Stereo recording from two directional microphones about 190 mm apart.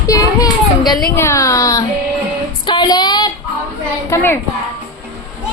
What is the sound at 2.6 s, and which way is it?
Female singing, 25° left (ahead or behind).